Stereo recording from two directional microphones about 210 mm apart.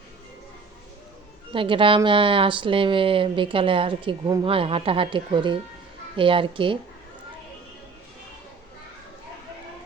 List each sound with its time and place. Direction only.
1.5 s a woman's voice: 25° right (ahead or behind)